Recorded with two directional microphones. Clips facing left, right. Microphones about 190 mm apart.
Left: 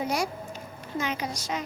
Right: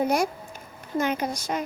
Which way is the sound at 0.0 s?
55° right (ahead or behind).